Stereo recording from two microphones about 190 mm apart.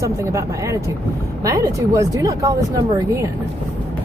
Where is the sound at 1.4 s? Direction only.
15° right (ahead or behind).